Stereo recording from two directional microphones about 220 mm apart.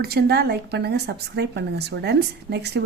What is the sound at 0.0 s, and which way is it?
A woman's voice, 45° right (ahead or behind).